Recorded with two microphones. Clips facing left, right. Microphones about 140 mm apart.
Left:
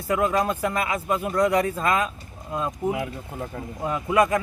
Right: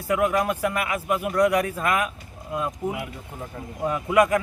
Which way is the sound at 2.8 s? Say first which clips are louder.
Left 6 dB; 10° left (ahead or behind).